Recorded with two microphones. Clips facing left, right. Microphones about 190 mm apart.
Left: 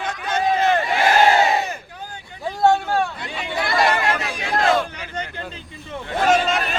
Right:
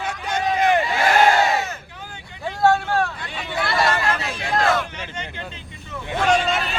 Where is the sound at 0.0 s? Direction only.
10° right (ahead or behind).